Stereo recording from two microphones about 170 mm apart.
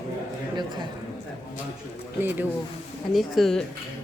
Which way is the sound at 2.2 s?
10° right (ahead or behind).